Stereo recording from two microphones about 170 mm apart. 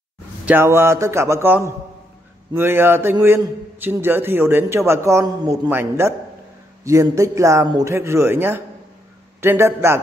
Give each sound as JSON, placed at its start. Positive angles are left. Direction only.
{"t": 0.5, "sound": "a man's voice", "side_deg": -15}